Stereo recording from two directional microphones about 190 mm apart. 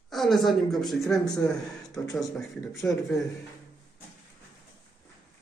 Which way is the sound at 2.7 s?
Centre (ahead or behind).